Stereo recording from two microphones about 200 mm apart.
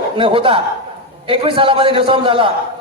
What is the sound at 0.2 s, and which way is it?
A man's voice, 25° right (ahead or behind).